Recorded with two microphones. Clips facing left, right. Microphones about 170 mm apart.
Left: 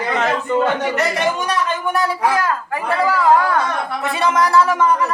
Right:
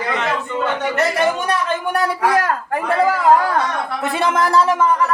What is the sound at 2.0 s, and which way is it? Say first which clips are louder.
A man's voice: right 1 dB; 60° right (ahead or behind).